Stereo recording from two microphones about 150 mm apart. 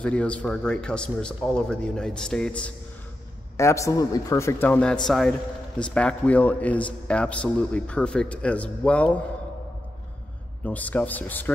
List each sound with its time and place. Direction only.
0.0 s a man's voice: 10° left (ahead or behind)
3.5 s a man's voice: 20° left (ahead or behind)
10.6 s a man's voice: 10° left (ahead or behind)